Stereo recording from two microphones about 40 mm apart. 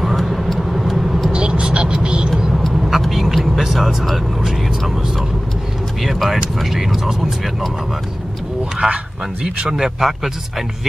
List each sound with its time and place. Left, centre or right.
0.0 s vehicle: centre
1.3 s vehicle: right
2.5 s vehicle: centre
6.0 s vehicle: centre
8.7 s speech: right
9.8 s speech: centre